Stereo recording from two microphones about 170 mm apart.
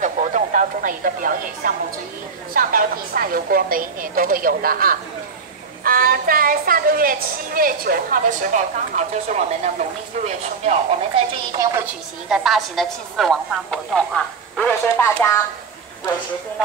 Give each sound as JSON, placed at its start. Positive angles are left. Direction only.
{"t": 0.0, "sound": "a sound", "side_deg": -45}
{"t": 2.5, "sound": "a woman's voice", "side_deg": -55}
{"t": 11.5, "sound": "speech", "side_deg": -20}
{"t": 11.8, "sound": "a woman's voice", "side_deg": -5}